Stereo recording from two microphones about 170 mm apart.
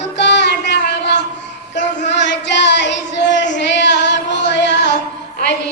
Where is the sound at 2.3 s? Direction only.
90° left.